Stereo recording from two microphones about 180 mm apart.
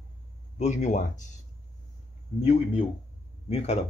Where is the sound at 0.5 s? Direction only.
40° left (ahead or behind).